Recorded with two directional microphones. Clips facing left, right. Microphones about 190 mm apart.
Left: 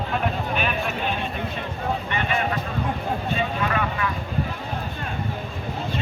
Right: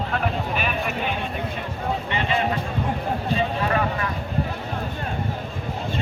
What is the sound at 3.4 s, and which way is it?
Speech, 35° right (ahead or behind).